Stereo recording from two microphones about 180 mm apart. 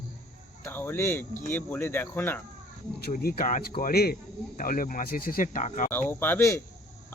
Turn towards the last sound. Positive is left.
turn(degrees=15)  # may be behind; listen again after turning